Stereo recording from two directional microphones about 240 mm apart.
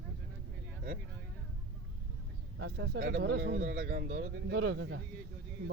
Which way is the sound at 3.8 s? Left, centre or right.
Right.